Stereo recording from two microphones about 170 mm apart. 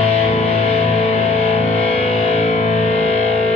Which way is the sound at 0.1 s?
35° left (ahead or behind).